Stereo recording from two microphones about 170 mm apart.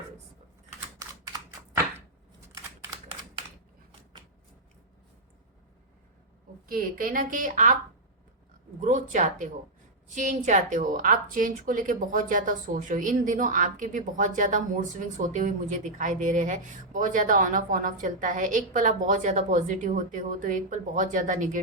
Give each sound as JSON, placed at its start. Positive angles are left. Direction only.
{"t": 0.9, "sound": "typing", "side_deg": -20}
{"t": 6.7, "sound": "a woman's voice", "side_deg": -55}
{"t": 8.8, "sound": "a woman's voice", "side_deg": -45}